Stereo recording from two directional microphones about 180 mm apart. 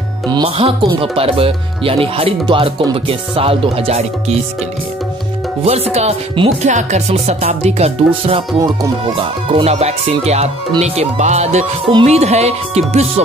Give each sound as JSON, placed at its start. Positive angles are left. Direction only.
{"t": 0.3, "sound": "speech", "side_deg": -30}
{"t": 5.7, "sound": "speech", "side_deg": -35}